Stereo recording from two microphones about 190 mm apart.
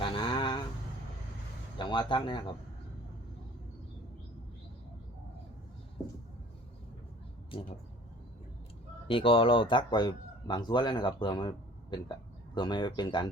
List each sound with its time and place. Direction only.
0.0 s a sound: 25° left (ahead or behind)
1.8 s speech: 25° left (ahead or behind)
7.5 s a man's voice: 30° left (ahead or behind)
9.0 s a man's voice: 30° left (ahead or behind)